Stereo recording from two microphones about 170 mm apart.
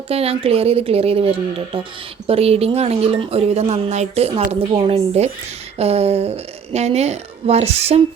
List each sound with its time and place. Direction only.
0.1 s a woman's voice: 35° right (ahead or behind)